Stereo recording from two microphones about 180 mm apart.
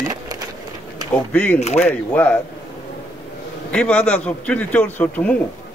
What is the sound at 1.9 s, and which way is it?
Speech, 10° left (ahead or behind).